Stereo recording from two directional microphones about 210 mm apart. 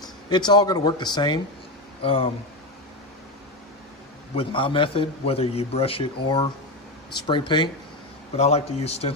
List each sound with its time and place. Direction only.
0.0 s speech: 20° left (ahead or behind)
4.4 s a man's voice: 25° left (ahead or behind)